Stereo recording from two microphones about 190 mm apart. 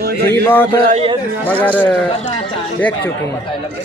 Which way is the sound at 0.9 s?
30° right (ahead or behind).